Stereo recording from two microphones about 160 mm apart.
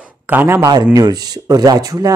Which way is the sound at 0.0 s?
10° right (ahead or behind).